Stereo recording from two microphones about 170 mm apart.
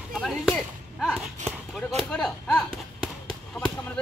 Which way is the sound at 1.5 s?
5° left (ahead or behind).